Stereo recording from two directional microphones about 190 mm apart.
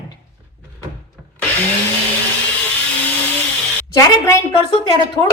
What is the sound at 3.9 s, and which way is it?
Speech, 15° left (ahead or behind).